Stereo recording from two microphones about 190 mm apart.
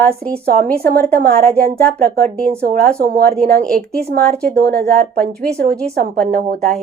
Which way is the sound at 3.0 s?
50° right (ahead or behind).